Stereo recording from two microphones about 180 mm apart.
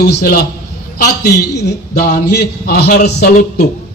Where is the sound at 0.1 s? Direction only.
60° left (ahead or behind).